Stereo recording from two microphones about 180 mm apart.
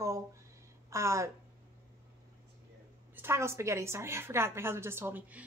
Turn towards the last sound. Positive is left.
turn(degrees=-10)  # may be behind; listen again after turning